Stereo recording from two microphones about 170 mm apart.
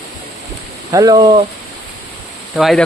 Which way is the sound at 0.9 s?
20° right (ahead or behind).